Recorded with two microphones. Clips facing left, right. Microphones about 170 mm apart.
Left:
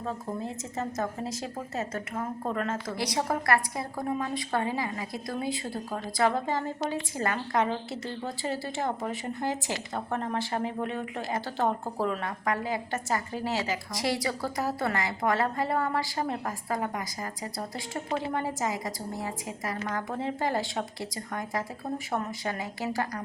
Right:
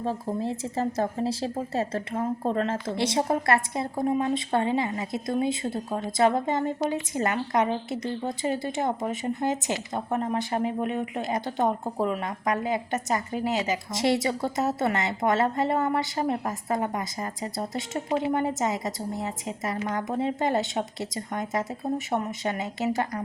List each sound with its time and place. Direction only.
0.0 s a woman's voice: 30° right (ahead or behind)